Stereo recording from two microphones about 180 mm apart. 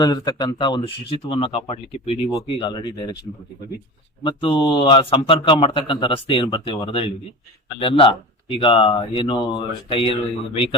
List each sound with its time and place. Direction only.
0.0 s a man's voice: 20° left (ahead or behind)